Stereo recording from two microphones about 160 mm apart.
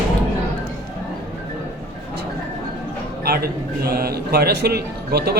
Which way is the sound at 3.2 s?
70° right (ahead or behind).